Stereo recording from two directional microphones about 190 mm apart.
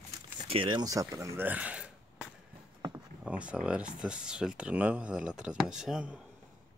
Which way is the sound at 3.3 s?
5° right (ahead or behind).